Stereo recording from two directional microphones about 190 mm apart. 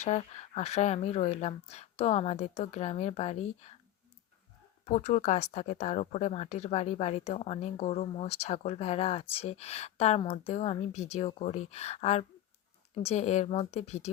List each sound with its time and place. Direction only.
0.0 s speech: 35° left (ahead or behind)
4.9 s speech: 35° left (ahead or behind)